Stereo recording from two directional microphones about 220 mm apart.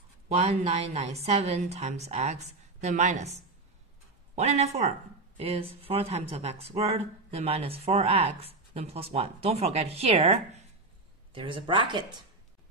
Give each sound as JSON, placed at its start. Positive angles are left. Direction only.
{"t": 0.3, "sound": "speech", "side_deg": -30}
{"t": 4.4, "sound": "speech", "side_deg": -30}